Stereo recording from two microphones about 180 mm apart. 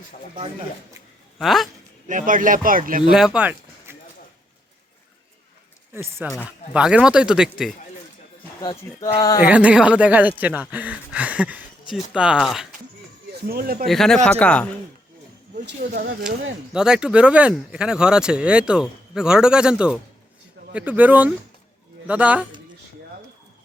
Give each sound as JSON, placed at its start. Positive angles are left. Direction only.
{"t": 1.4, "sound": "speech", "side_deg": 0}
{"t": 2.0, "sound": "speech", "side_deg": -45}
{"t": 3.1, "sound": "speech", "side_deg": -5}
{"t": 5.9, "sound": "speech", "side_deg": -15}
{"t": 8.6, "sound": "speech", "side_deg": 25}
{"t": 9.5, "sound": "speech", "side_deg": -5}
{"t": 13.5, "sound": "speech", "side_deg": -55}
{"t": 13.8, "sound": "speech", "side_deg": 0}
{"t": 16.7, "sound": "a man's voice", "side_deg": -5}